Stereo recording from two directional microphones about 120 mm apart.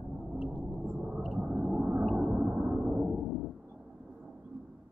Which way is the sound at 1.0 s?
5° right (ahead or behind).